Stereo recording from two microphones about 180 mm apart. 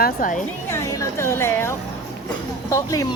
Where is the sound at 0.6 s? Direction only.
15° left (ahead or behind).